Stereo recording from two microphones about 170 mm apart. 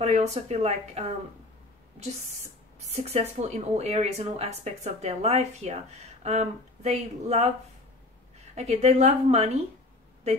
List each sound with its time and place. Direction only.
0.0 s speech: 40° right (ahead or behind)
3.1 s speech: 40° right (ahead or behind)
8.5 s speech: 40° right (ahead or behind)